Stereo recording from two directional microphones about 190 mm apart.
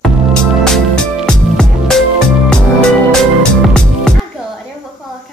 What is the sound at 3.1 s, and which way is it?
Music, 5° left (ahead or behind).